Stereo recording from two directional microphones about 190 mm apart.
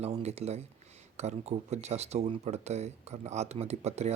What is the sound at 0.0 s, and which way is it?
Speech, 35° right (ahead or behind).